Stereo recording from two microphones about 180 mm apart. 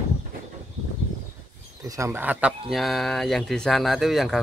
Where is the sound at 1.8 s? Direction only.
15° right (ahead or behind).